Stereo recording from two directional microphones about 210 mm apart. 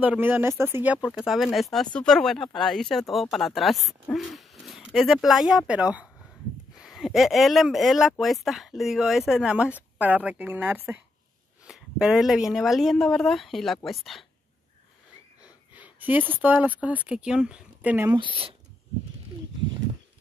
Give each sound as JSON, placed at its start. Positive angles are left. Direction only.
{"t": 0.0, "sound": "a woman's voice", "side_deg": -10}
{"t": 1.1, "sound": "a woman's voice", "side_deg": 0}
{"t": 15.7, "sound": "speech", "side_deg": -10}
{"t": 18.2, "sound": "speech", "side_deg": -25}